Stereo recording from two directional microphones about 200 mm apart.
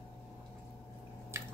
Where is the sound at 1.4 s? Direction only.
15° right (ahead or behind).